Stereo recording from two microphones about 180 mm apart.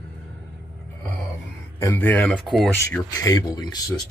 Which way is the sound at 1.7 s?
15° left (ahead or behind).